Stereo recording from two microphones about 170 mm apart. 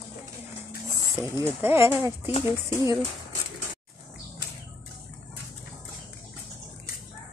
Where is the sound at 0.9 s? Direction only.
15° right (ahead or behind).